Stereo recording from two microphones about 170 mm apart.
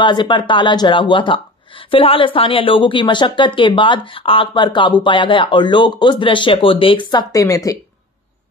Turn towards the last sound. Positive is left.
turn(degrees=20)  # may be behind; listen again after turning